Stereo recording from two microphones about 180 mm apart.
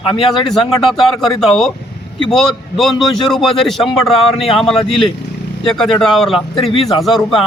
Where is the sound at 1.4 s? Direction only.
Centre (ahead or behind).